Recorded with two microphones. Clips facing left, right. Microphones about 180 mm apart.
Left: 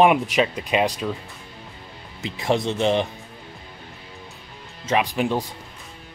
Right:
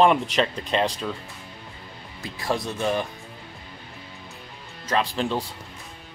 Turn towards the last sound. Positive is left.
turn(degrees=15)  # may be behind; listen again after turning